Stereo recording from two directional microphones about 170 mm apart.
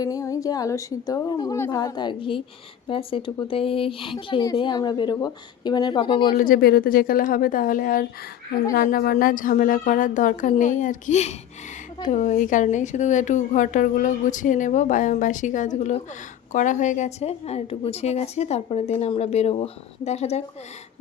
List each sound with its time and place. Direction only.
0.0 s a woman's voice: 20° left (ahead or behind)
6.3 s a woman's voice: 55° left (ahead or behind); by 20.4 s 40° left (ahead or behind)